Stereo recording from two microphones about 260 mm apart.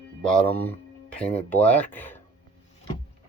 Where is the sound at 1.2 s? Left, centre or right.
Left.